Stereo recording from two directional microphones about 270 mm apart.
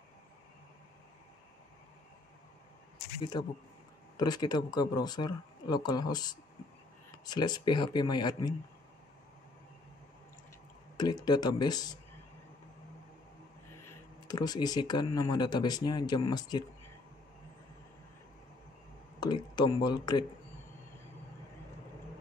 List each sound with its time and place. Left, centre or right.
3.2 s speech: centre
11.0 s speech: centre
13.8 s speech: centre
19.1 s speech: centre